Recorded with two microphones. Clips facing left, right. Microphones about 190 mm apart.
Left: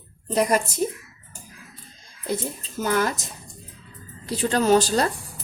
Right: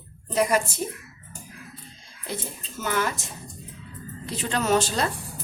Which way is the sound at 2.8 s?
40° left (ahead or behind).